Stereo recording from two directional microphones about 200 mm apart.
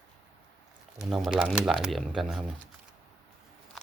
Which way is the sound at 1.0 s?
Centre (ahead or behind).